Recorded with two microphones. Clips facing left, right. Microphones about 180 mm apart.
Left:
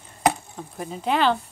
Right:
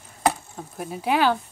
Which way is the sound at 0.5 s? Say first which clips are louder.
Even; 5° right (ahead or behind).